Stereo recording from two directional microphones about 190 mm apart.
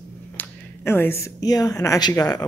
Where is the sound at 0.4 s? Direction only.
10° left (ahead or behind).